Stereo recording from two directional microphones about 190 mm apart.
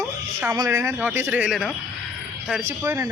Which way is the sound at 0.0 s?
10° right (ahead or behind).